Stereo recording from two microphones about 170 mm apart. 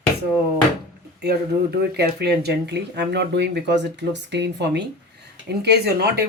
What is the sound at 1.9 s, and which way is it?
Speech, 70° right (ahead or behind).